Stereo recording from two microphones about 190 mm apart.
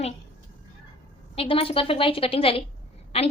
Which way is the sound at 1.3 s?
30° left (ahead or behind).